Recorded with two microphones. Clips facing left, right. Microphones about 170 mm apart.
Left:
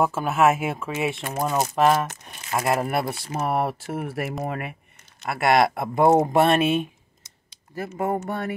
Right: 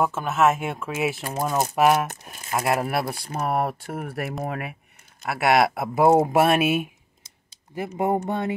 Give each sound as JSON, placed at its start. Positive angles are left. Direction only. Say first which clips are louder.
{"t": 0.0, "sound": "speech", "louder": "left 1 dB", "side_deg": 5}
{"t": 8.3, "sound": "music", "louder": "right 2 dB", "side_deg": -20}